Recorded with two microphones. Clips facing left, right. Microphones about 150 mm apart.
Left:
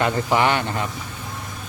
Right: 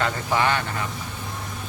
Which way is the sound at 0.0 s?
20° left (ahead or behind).